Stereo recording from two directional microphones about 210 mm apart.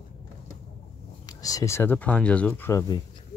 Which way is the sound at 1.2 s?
15° left (ahead or behind).